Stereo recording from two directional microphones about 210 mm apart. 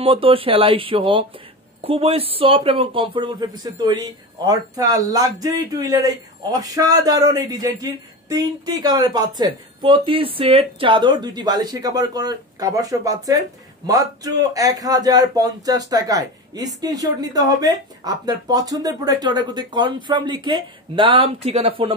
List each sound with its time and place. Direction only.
0.0 s speech: 25° right (ahead or behind)